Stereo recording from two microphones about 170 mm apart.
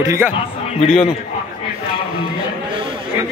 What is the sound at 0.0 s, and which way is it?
Speech, 15° right (ahead or behind).